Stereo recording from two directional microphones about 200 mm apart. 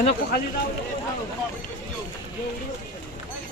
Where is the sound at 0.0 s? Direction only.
50° left (ahead or behind).